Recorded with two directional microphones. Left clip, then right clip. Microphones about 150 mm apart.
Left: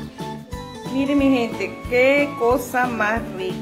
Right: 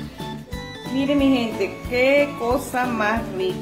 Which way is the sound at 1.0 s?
20° left (ahead or behind).